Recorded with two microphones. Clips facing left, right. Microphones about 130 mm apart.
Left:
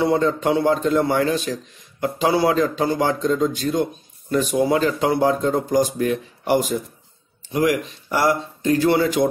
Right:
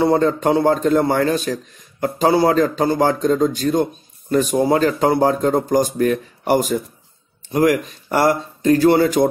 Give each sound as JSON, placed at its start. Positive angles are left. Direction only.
{"t": 0.0, "sound": "speech", "side_deg": -45}